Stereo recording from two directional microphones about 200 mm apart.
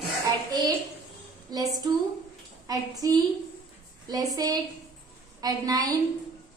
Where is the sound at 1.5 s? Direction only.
20° right (ahead or behind).